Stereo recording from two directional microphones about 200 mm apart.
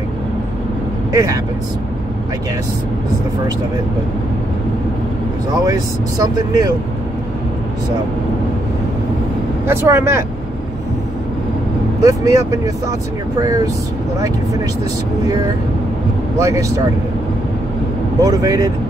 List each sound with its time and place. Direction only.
1.1 s speech: 15° right (ahead or behind)
5.7 s speech: 20° right (ahead or behind)
9.7 s speech: 10° right (ahead or behind)
12.0 s speech: 15° right (ahead or behind)
16.3 s speech: 15° right (ahead or behind)
18.2 s speech: 15° right (ahead or behind)